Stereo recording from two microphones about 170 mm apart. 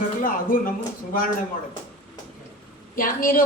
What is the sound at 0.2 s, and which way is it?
Music, 55° left (ahead or behind).